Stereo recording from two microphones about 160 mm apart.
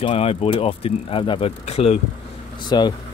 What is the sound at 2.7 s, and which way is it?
Speech, 25° left (ahead or behind).